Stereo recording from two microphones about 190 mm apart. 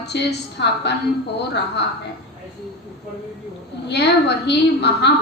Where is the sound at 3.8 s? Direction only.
60° left (ahead or behind).